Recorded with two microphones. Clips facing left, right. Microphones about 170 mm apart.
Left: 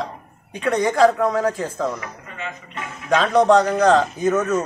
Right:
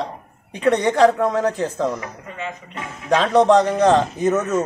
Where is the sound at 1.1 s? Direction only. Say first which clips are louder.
Even; centre (ahead or behind).